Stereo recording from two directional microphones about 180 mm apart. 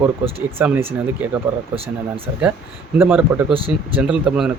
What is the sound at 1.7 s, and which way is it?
Speech, 30° right (ahead or behind).